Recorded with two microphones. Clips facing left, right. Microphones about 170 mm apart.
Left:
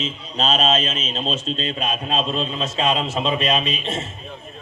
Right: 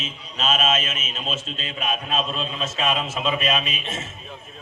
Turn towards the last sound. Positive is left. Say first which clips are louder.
# left 5 dB
turn(degrees=35)  # may be behind; listen again after turning